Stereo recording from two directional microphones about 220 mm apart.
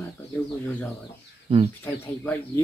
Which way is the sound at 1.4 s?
25° right (ahead or behind).